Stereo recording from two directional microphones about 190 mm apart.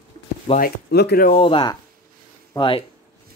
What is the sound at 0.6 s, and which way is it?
Speech, 55° left (ahead or behind).